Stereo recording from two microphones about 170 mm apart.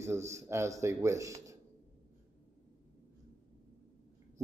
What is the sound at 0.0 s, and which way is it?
A man's voice, 15° right (ahead or behind).